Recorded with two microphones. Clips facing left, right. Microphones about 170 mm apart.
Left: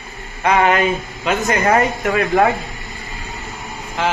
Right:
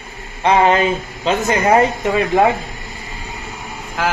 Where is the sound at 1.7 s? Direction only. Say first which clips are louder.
Right 2 dB; 20° right (ahead or behind).